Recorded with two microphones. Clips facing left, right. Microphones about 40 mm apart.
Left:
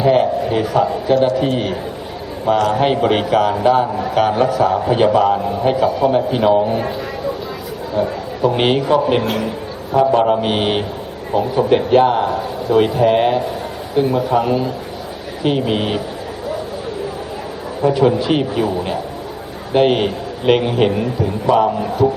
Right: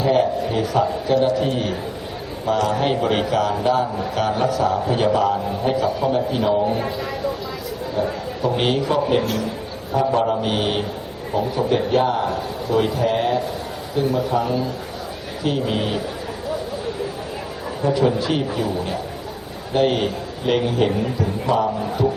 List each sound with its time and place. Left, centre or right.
0.0 s a man's voice: left
8.5 s a man's voice: left
17.8 s speech: centre
18.3 s a man's voice: left